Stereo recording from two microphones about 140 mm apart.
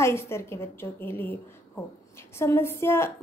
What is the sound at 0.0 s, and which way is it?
A woman's voice, 20° left (ahead or behind).